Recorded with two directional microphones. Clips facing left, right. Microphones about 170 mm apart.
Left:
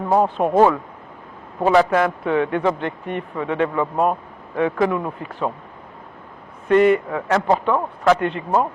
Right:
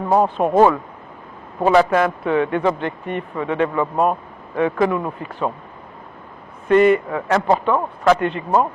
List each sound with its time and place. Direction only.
0.0 s speech: 30° right (ahead or behind)
4.9 s speech: 30° right (ahead or behind)
6.7 s a man's voice: 15° right (ahead or behind)